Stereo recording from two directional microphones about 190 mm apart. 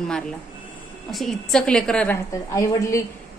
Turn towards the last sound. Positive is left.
turn(degrees=15)  # may be behind; listen again after turning